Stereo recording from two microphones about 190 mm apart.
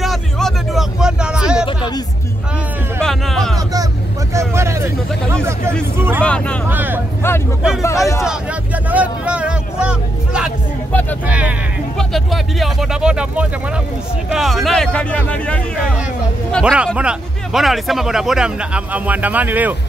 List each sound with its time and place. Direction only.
0.0 s a sound: centre (ahead or behind)
3.0 s speech: centre (ahead or behind)
4.3 s speech: 15° right (ahead or behind)
5.9 s speech: 10° right (ahead or behind)
6.2 s speech: 5° left (ahead or behind)
6.7 s speech: 10° right (ahead or behind)
7.8 s speech: 15° left (ahead or behind)
8.9 s speech: 5° right (ahead or behind)
10.9 s speech: 10° left (ahead or behind)
11.2 s speech: 5° right (ahead or behind)